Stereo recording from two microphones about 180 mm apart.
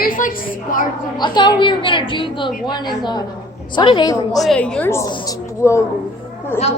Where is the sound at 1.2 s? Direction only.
25° left (ahead or behind).